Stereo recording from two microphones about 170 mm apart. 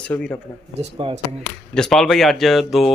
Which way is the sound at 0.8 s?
40° right (ahead or behind).